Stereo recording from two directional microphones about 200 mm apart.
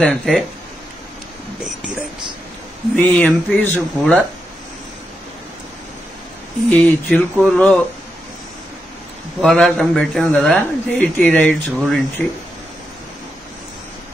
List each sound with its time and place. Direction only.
0.0 s a man's voice: centre (ahead or behind)
3.0 s speech: 10° left (ahead or behind)
6.7 s speech: 5° left (ahead or behind)
9.4 s a man's voice: centre (ahead or behind)